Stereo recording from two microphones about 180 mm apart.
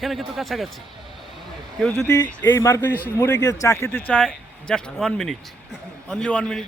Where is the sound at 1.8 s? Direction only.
10° left (ahead or behind).